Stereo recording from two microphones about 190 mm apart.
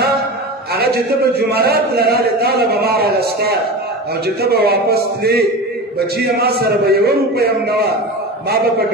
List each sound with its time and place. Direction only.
0.7 s a man's voice: 55° right (ahead or behind)